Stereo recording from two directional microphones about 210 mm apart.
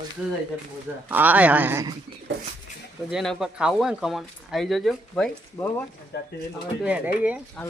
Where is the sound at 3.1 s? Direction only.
Centre (ahead or behind).